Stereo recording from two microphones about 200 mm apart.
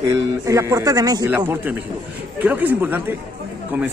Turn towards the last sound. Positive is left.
turn(degrees=-10)  # may be behind; listen again after turning